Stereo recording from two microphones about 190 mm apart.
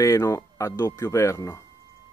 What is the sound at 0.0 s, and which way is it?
Speech, 15° left (ahead or behind).